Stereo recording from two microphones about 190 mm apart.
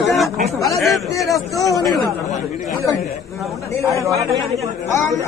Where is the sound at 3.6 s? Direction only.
15° left (ahead or behind).